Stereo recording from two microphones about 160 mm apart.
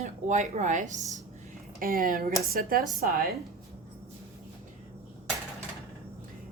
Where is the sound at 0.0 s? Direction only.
45° right (ahead or behind).